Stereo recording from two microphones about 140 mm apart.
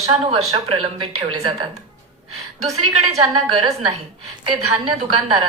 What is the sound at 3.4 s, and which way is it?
A woman's voice, 35° right (ahead or behind).